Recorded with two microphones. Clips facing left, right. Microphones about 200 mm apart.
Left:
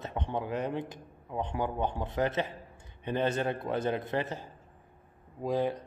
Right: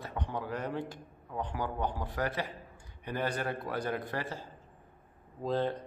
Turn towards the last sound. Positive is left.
turn(degrees=10)  # may be behind; listen again after turning